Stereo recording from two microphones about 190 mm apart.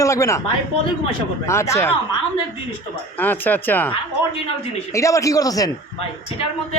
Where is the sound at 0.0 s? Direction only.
15° left (ahead or behind).